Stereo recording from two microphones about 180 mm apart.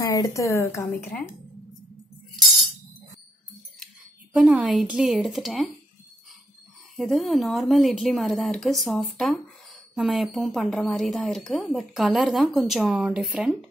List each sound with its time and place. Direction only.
0.0 s a woman's voice: 15° left (ahead or behind)
4.3 s speech: 5° right (ahead or behind)
7.0 s speech: centre (ahead or behind)